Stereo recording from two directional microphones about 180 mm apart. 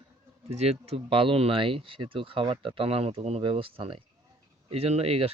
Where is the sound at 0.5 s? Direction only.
35° right (ahead or behind).